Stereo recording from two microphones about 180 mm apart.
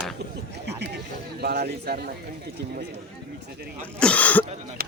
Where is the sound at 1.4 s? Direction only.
60° right (ahead or behind).